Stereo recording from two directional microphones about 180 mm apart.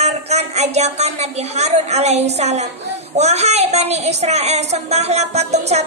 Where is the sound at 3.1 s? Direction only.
35° right (ahead or behind).